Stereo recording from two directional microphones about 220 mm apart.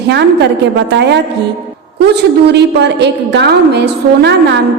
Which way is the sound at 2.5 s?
50° right (ahead or behind).